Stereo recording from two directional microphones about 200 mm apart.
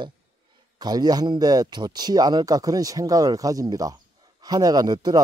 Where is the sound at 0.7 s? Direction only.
20° right (ahead or behind).